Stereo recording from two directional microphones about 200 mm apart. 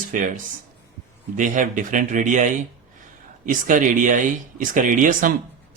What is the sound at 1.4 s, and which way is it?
Speech, 40° right (ahead or behind).